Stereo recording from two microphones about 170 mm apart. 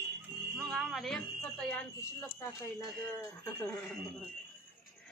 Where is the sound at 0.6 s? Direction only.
Centre (ahead or behind).